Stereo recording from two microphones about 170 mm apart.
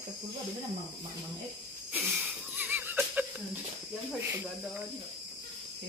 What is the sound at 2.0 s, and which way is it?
Wheeze, centre (ahead or behind).